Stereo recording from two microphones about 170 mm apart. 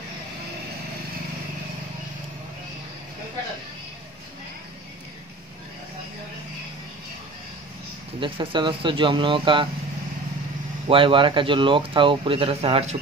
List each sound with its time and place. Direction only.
8.2 s speech: 30° right (ahead or behind)
10.9 s speech: 30° right (ahead or behind)